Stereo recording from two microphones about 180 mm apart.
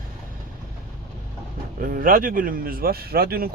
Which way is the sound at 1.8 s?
50° right (ahead or behind).